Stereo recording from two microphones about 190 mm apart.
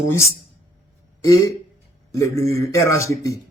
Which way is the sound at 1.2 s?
15° left (ahead or behind).